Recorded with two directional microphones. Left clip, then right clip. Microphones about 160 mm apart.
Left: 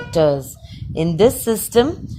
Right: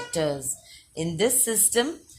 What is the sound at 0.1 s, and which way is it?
A woman's voice, 50° left (ahead or behind).